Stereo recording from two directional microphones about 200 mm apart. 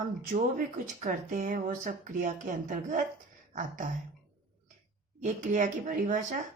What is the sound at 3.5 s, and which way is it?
Beatboxing, 40° right (ahead or behind).